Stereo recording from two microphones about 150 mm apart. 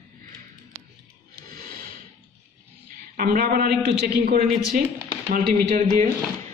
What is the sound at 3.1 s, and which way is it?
Speech, 75° right (ahead or behind).